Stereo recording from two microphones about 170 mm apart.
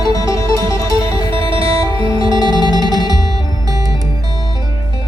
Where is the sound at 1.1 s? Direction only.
30° right (ahead or behind).